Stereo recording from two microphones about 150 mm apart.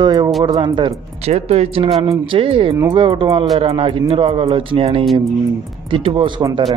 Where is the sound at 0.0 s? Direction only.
30° right (ahead or behind).